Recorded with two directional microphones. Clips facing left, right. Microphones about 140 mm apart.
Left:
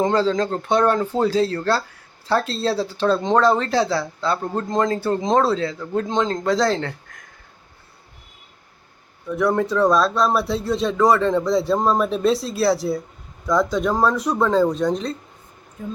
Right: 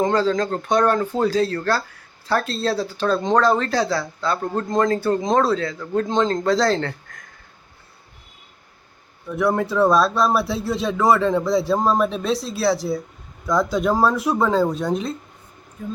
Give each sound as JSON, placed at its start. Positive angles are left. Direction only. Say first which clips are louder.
{"t": 0.0, "sound": "speech", "louder": "even", "side_deg": 25}
{"t": 9.2, "sound": "speech", "louder": "left 1 dB", "side_deg": -5}